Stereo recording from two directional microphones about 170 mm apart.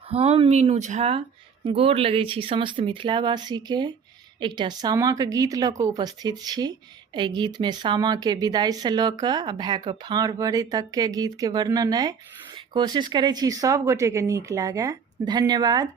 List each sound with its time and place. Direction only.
0.1 s a woman's voice: 35° right (ahead or behind)